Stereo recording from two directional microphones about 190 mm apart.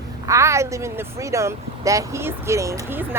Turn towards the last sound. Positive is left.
turn(degrees=-15)  # may be behind; listen again after turning